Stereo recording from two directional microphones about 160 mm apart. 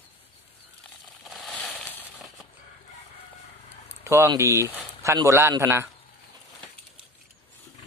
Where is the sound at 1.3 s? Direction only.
5° left (ahead or behind).